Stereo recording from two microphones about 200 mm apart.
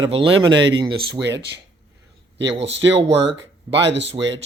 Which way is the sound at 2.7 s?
65° right (ahead or behind).